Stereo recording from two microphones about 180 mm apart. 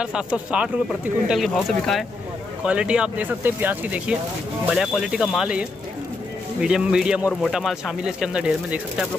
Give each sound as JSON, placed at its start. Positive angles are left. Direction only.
{"t": 0.0, "sound": "a man's voice", "side_deg": -5}